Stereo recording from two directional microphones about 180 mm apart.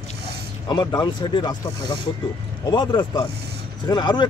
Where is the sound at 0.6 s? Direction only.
25° left (ahead or behind).